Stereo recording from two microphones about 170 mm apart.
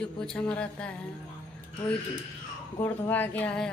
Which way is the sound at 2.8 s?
10° left (ahead or behind).